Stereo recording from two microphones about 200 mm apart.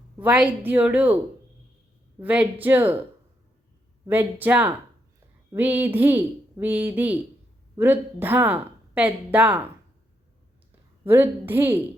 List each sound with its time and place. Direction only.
0.2 s speech: 5° right (ahead or behind)
2.1 s speech: 10° right (ahead or behind)
4.0 s speech: 10° right (ahead or behind)
11.0 s speech: 10° right (ahead or behind)